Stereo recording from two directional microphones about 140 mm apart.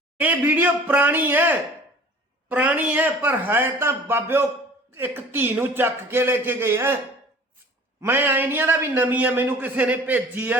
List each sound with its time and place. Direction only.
0.2 s a man's voice: 10° right (ahead or behind)
8.0 s a man's voice: 15° right (ahead or behind)